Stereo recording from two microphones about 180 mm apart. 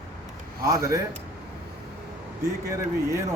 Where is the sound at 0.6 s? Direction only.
20° right (ahead or behind).